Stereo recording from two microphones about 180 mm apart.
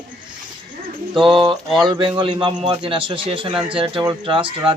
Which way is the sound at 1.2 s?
Centre (ahead or behind).